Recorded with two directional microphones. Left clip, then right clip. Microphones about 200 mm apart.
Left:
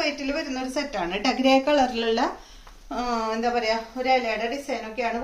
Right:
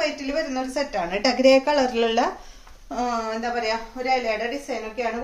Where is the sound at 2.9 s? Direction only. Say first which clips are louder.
Right 1 dB; 10° right (ahead or behind).